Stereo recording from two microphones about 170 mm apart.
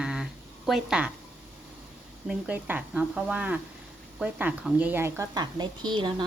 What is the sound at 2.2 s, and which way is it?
A woman's voice, 10° right (ahead or behind).